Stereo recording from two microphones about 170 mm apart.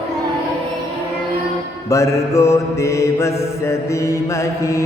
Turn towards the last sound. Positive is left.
turn(degrees=15)  # may be behind; listen again after turning